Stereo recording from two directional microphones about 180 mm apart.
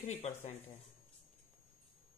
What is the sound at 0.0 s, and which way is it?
Speech, 40° left (ahead or behind).